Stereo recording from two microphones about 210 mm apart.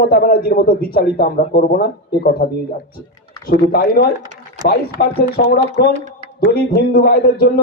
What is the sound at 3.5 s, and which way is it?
Speech, 45° left (ahead or behind).